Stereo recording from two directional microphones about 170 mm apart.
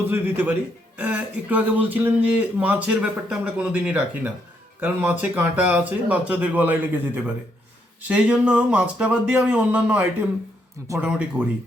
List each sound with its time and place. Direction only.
0.1 s speech: 15° right (ahead or behind)